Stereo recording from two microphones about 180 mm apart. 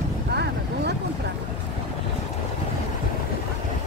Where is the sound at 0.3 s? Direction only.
65° right (ahead or behind).